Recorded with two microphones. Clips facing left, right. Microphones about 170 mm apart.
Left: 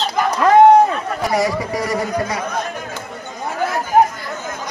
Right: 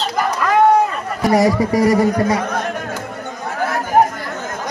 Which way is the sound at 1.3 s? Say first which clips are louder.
Right 6 dB; 40° right (ahead or behind).